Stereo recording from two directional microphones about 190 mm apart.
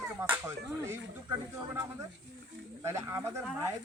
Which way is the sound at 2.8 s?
15° right (ahead or behind).